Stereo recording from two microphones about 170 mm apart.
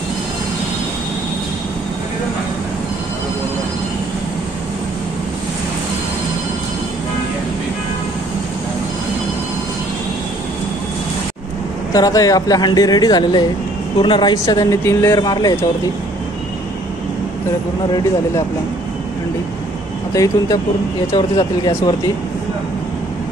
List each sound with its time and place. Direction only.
11.9 s speech: 20° left (ahead or behind)
21.1 s speech: 25° left (ahead or behind)